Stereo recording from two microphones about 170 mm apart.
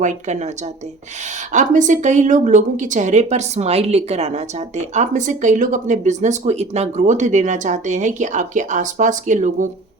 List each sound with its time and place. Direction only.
0.0 s a woman's voice: 45° right (ahead or behind)
1.5 s a woman's voice: 45° right (ahead or behind)